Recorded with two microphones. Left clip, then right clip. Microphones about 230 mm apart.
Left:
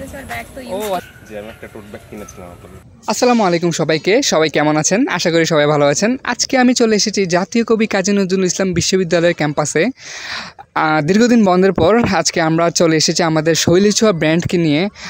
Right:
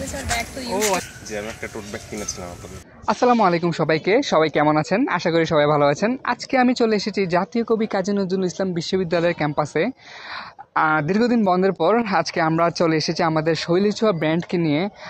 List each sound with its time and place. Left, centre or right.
0.7 s speech: left
3.1 s speech: left